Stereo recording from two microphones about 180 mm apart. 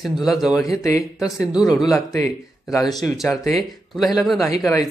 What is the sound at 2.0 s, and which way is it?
Speech, 20° left (ahead or behind).